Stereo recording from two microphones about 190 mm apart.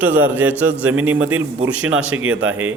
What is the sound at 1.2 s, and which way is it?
Speech, 90° right.